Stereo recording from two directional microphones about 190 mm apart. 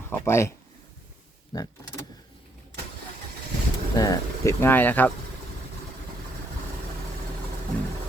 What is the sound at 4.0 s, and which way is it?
Speech, 15° left (ahead or behind).